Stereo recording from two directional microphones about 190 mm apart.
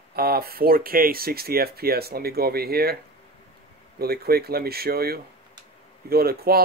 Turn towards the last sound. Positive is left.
turn(degrees=-55)  # may be behind; listen again after turning